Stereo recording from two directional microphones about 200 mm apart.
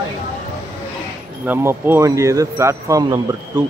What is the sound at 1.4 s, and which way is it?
Speech, 10° right (ahead or behind).